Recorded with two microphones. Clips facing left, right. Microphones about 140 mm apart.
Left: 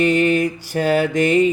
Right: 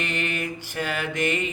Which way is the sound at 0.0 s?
40° left (ahead or behind).